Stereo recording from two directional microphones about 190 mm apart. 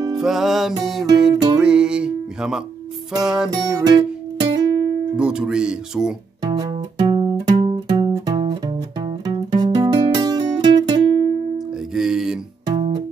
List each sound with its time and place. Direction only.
0.2 s speech: centre (ahead or behind)
1.3 s music: 20° right (ahead or behind)
1.6 s music: 5° right (ahead or behind)
3.2 s speech: 5° right (ahead or behind)
3.7 s music: 20° right (ahead or behind)
5.1 s speech: 5° right (ahead or behind)
6.4 s music: 20° right (ahead or behind)
11.5 s music: centre (ahead or behind)
12.6 s music: 25° right (ahead or behind)